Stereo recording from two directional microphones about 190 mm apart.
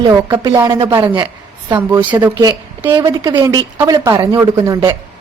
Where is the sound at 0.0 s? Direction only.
20° right (ahead or behind).